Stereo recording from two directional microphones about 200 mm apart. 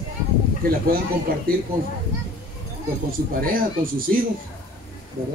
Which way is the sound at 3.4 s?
45° right (ahead or behind).